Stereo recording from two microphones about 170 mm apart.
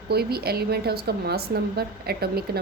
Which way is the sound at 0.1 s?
65° right (ahead or behind).